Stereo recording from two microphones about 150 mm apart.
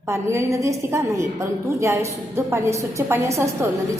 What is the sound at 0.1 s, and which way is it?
A woman's voice, 20° right (ahead or behind).